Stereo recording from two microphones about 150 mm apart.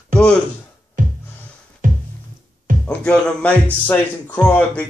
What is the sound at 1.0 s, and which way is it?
Music, 65° right (ahead or behind).